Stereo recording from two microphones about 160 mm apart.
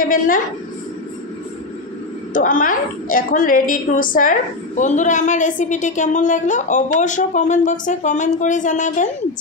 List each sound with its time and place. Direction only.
0.0 s a woman's voice: 60° left (ahead or behind)
2.3 s a woman's voice: 55° left (ahead or behind)